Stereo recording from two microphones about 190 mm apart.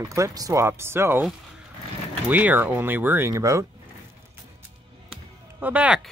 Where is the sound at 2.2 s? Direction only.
10° right (ahead or behind).